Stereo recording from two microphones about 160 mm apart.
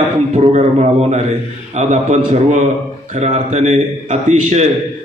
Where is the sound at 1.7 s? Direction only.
45° right (ahead or behind).